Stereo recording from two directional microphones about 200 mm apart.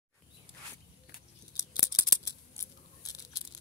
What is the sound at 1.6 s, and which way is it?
Scissors, 15° left (ahead or behind).